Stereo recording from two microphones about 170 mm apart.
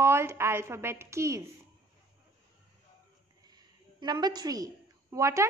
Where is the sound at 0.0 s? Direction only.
15° right (ahead or behind).